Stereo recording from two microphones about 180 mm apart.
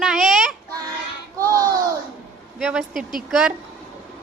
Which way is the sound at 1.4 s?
20° right (ahead or behind).